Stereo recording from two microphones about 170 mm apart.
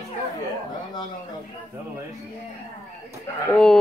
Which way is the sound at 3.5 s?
5° left (ahead or behind).